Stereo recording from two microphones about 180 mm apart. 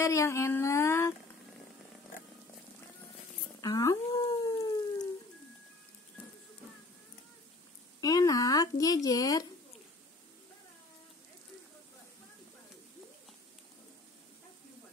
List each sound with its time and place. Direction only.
0.0 s speech: 15° left (ahead or behind)
3.6 s dog: 20° left (ahead or behind)
8.0 s a sound: 20° left (ahead or behind)